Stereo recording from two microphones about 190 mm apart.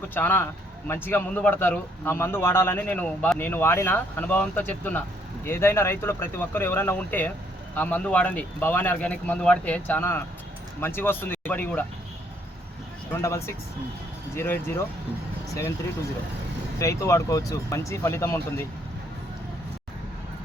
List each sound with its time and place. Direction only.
0.1 s a man's voice: 10° left (ahead or behind)
13.1 s a man's voice: 15° left (ahead or behind)
17.0 s a man's voice: 15° left (ahead or behind)